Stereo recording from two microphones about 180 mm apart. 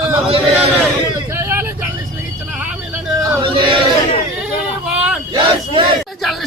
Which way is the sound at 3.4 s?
25° right (ahead or behind).